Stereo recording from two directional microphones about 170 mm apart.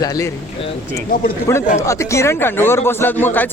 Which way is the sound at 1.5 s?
15° left (ahead or behind).